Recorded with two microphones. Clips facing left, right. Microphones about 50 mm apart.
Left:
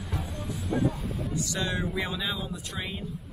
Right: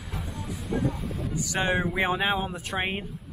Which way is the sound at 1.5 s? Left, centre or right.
Right.